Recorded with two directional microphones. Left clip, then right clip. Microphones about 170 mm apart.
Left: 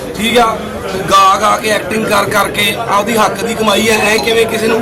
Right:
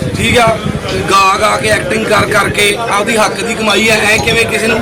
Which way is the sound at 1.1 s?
10° left (ahead or behind).